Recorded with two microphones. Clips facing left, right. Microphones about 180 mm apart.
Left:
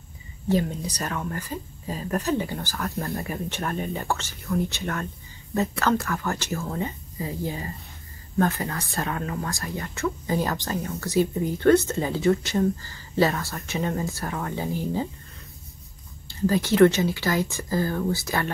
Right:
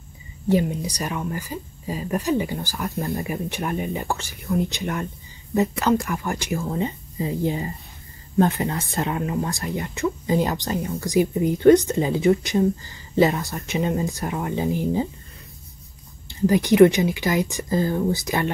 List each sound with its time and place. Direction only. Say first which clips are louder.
0.5 s speech: right 3 dB; 15° right (ahead or behind)
16.3 s speech: right 4 dB; 15° right (ahead or behind)